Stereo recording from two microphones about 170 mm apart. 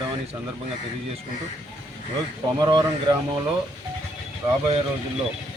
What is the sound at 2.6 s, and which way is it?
Speech, 25° right (ahead or behind).